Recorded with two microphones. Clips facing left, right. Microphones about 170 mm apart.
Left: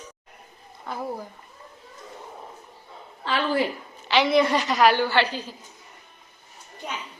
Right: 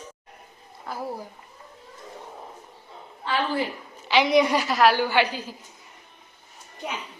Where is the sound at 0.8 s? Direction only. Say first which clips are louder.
Left 1 dB; 5° right (ahead or behind).